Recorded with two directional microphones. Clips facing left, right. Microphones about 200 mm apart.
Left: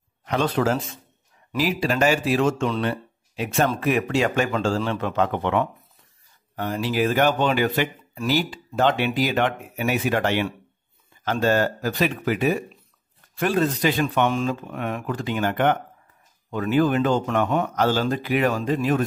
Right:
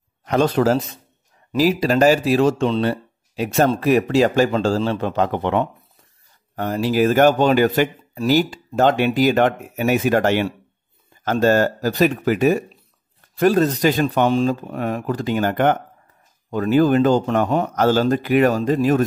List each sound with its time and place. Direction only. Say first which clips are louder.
0.2 s a man's voice: right 5 dB; 40° right (ahead or behind)
6.5 s a man's voice: right 5 dB; 45° right (ahead or behind)